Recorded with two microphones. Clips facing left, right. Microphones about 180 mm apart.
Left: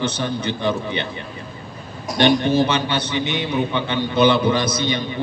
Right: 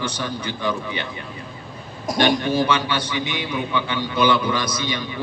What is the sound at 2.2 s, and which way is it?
A man's voice, 25° left (ahead or behind).